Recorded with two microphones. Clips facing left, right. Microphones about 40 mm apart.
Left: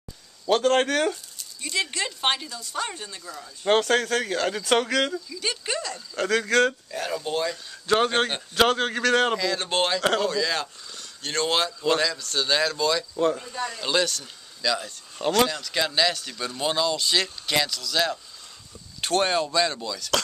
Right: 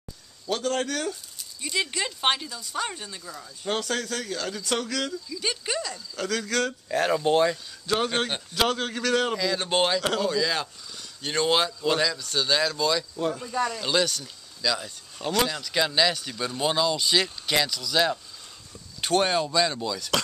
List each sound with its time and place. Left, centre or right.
0.5 s speech: left
1.4 s speech: centre
3.6 s speech: left
5.4 s speech: centre
6.1 s a man's voice: left
6.9 s speech: right
7.2 s speech: right
7.8 s a man's voice: left
8.1 s a man's voice: centre
9.4 s speech: centre
13.1 s a man's voice: centre